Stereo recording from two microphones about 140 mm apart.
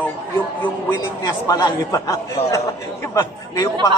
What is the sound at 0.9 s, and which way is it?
Speech, 25° left (ahead or behind).